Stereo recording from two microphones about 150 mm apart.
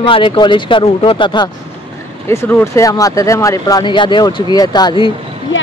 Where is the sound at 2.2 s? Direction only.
15° left (ahead or behind).